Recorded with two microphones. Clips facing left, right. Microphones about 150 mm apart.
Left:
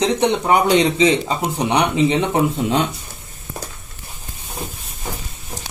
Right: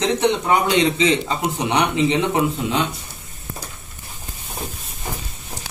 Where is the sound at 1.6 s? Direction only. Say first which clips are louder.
Left 2 dB; 15° left (ahead or behind).